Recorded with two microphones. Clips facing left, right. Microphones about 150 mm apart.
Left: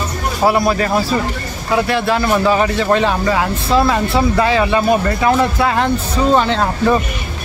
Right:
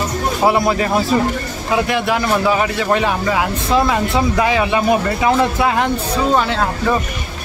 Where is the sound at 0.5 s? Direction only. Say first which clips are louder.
Left 1 dB; 20° right (ahead or behind).